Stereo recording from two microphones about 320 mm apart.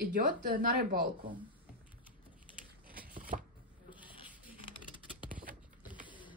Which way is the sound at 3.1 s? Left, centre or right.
Right.